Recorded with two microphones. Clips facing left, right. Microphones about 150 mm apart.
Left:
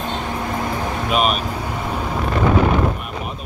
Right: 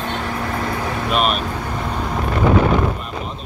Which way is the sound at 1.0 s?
5° left (ahead or behind).